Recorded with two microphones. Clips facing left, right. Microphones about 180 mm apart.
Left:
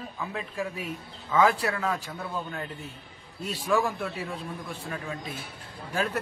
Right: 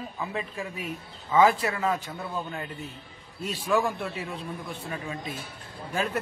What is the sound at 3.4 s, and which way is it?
Speech, centre (ahead or behind).